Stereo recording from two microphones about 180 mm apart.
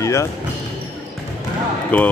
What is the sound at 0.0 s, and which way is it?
Basketball bounce, 15° left (ahead or behind).